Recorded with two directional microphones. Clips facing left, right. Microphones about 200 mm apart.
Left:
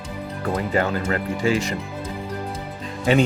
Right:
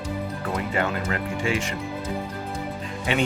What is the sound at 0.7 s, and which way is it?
Speech, 35° left (ahead or behind).